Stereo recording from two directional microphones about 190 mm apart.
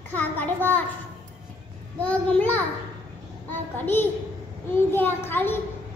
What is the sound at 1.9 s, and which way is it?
Speech, 10° left (ahead or behind).